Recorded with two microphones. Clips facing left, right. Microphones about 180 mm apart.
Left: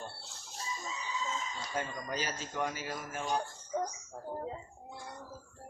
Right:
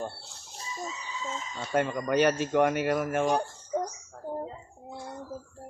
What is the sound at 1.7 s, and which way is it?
Speech, 65° right (ahead or behind).